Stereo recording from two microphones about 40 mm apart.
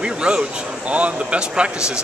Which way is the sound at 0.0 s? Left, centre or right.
Right.